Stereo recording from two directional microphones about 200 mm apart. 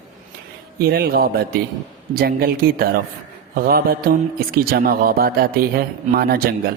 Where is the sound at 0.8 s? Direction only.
50° right (ahead or behind).